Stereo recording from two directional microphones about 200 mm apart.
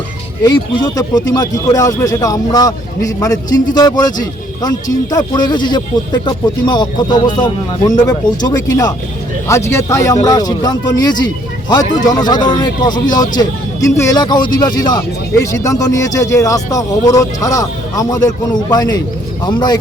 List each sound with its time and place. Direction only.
0.4 s a man's voice: 20° left (ahead or behind)